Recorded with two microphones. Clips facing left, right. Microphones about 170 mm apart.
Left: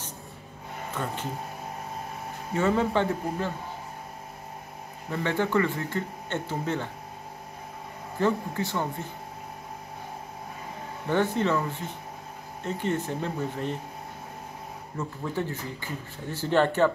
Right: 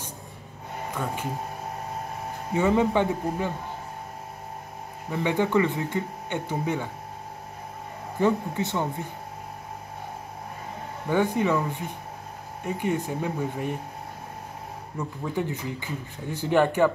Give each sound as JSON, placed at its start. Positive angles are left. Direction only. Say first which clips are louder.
{"t": 0.9, "sound": "speech", "louder": "right 1 dB", "side_deg": -10}
{"t": 2.5, "sound": "speech", "louder": "right 2 dB", "side_deg": -15}
{"t": 5.1, "sound": "speech", "louder": "right 2 dB", "side_deg": -15}
{"t": 8.2, "sound": "speech", "louder": "right 2 dB", "side_deg": -15}
{"t": 11.1, "sound": "speech", "louder": "right 2 dB", "side_deg": -10}
{"t": 15.2, "sound": "speech", "louder": "right 3 dB", "side_deg": -15}